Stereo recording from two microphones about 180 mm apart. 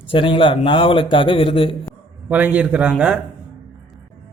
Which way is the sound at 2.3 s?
10° right (ahead or behind).